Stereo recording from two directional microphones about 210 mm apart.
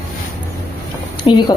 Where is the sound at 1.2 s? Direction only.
20° left (ahead or behind).